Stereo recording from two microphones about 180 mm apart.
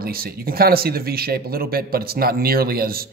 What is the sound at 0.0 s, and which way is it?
Speech, 55° right (ahead or behind).